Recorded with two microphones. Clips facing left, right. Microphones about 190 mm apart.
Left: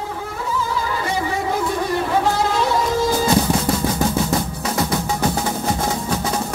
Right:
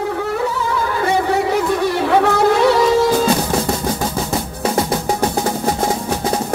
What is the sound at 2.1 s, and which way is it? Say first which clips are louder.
Music: right 8 dB; 65° right (ahead or behind).